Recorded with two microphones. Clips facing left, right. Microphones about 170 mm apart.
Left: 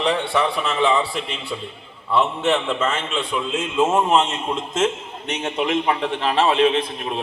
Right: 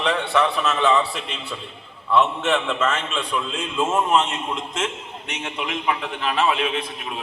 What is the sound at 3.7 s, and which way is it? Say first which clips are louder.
Speech: left 2 dB; 25° left (ahead or behind).